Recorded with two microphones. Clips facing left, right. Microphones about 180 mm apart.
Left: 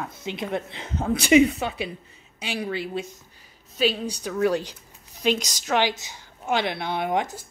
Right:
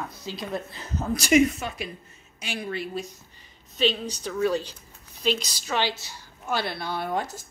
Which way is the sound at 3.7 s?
10° left (ahead or behind).